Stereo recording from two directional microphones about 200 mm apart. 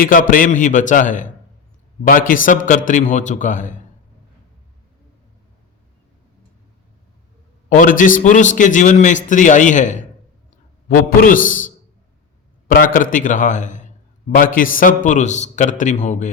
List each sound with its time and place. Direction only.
0.0 s a man's voice: 45° left (ahead or behind)
7.7 s a man's voice: 40° left (ahead or behind)